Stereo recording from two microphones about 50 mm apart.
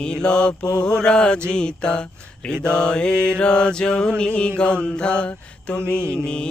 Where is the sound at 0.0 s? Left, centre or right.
Centre.